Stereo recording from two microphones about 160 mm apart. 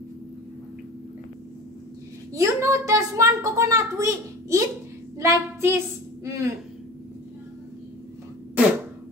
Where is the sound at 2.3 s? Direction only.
20° right (ahead or behind).